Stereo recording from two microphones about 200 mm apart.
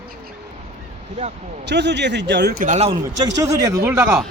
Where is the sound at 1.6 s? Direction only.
60° right (ahead or behind); by 3.0 s 35° right (ahead or behind).